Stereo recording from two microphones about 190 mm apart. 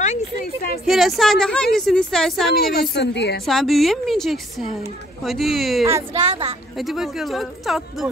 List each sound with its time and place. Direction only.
0.0 s a sound: 40° left (ahead or behind)
0.8 s a woman's voice: centre (ahead or behind)
2.5 s a woman's voice: 55° left (ahead or behind)
3.4 s a woman's voice: centre (ahead or behind)
6.1 s speech: 35° right (ahead or behind)
6.8 s a woman's voice: centre (ahead or behind)